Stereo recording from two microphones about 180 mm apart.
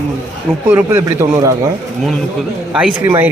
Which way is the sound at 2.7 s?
5° right (ahead or behind).